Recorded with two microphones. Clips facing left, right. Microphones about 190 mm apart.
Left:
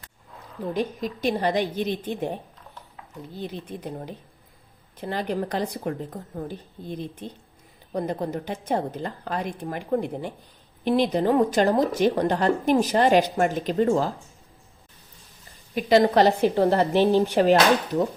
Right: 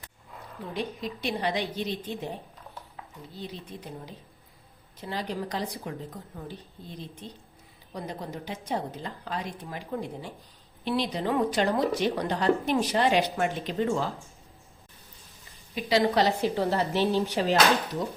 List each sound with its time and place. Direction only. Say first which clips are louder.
0.7 s a woman's voice: left 6 dB; 45° left (ahead or behind)
3.4 s a woman's voice: left 6 dB; 55° left (ahead or behind)
15.7 s a woman's voice: left 6 dB; 50° left (ahead or behind)